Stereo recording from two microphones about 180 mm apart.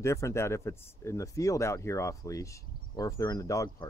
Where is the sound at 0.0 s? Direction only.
15° left (ahead or behind).